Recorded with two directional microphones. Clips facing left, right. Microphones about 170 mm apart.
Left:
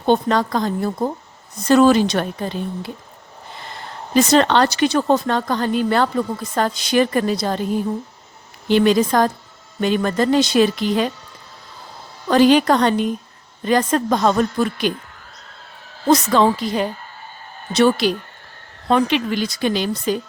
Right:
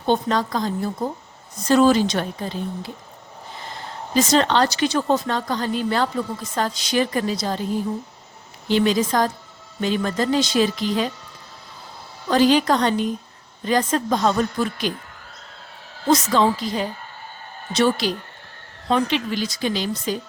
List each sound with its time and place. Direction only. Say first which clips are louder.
0.0 s a woman's voice: left 4 dB; 60° left (ahead or behind)
4.1 s a woman's voice: left 4 dB; 65° left (ahead or behind)
8.7 s a woman's voice: left 4 dB; 60° left (ahead or behind)
12.3 s a woman's voice: left 3 dB; 60° left (ahead or behind)
16.0 s a woman's voice: left 3 dB; 60° left (ahead or behind)